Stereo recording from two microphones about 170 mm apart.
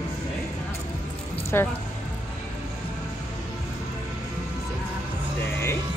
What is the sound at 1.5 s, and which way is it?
Speech, 15° left (ahead or behind).